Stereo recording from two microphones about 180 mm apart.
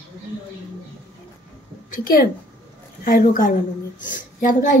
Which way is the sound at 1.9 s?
50° left (ahead or behind).